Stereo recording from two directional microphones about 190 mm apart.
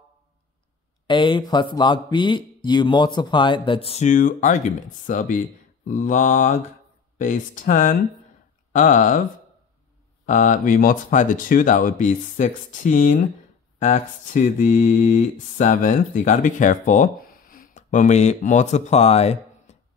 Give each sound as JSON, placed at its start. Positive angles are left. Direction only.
{"t": 1.0, "sound": "speech", "side_deg": 25}
{"t": 5.9, "sound": "mantra", "side_deg": 40}
{"t": 8.7, "sound": "speech", "side_deg": 45}
{"t": 10.2, "sound": "speech", "side_deg": 40}
{"t": 13.7, "sound": "mantra", "side_deg": 35}